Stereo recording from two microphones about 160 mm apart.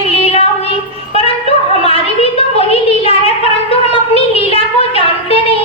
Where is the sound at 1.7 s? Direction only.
35° left (ahead or behind).